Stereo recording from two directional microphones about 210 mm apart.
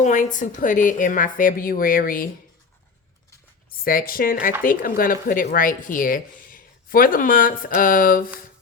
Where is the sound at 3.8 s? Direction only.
45° left (ahead or behind).